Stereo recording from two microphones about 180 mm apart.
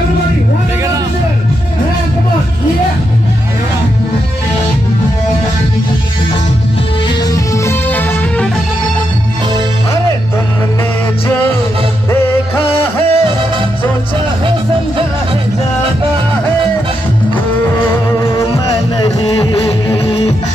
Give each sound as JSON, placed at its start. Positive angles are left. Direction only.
{"t": 7.2, "sound": "music", "side_deg": 15}
{"t": 12.1, "sound": "music", "side_deg": 15}
{"t": 19.1, "sound": "music", "side_deg": 20}